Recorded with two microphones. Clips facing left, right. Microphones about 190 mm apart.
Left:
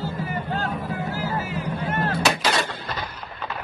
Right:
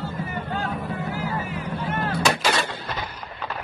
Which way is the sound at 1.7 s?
50° left (ahead or behind).